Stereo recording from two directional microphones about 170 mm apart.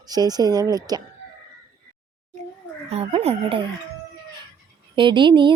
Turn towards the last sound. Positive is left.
turn(degrees=-30)  # may be behind; listen again after turning